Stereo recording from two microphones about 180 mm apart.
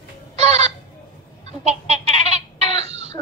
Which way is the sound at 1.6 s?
35° right (ahead or behind).